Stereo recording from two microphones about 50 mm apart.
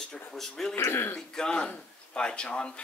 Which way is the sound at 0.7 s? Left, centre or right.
Left.